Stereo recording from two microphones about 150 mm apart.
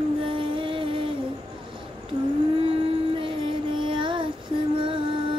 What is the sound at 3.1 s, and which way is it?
Music, 35° right (ahead or behind).